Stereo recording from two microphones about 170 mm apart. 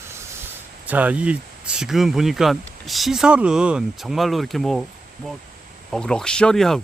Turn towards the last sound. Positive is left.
turn(degrees=0)  # may be behind; listen again after turning